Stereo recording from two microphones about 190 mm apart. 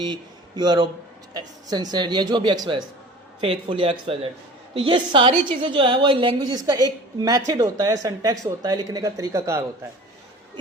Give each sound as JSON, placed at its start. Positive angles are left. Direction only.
{"t": 0.0, "sound": "a woman's voice", "side_deg": -25}